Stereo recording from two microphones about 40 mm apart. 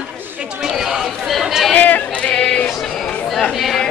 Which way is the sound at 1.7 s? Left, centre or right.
Left.